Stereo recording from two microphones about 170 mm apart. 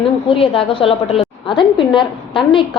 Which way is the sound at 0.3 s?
30° left (ahead or behind).